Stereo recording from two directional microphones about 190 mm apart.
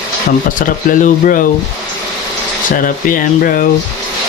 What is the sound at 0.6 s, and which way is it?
Speech, 45° left (ahead or behind).